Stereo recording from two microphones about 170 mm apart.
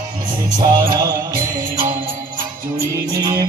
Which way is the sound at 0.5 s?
20° right (ahead or behind).